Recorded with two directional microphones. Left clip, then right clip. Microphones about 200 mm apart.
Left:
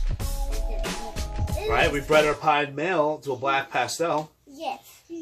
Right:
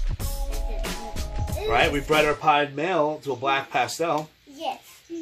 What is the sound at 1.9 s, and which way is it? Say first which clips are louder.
Speech: left 1 dB; 20° right (ahead or behind).